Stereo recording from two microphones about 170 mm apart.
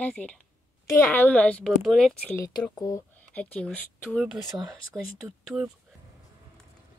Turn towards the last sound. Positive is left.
turn(degrees=0)  # may be behind; listen again after turning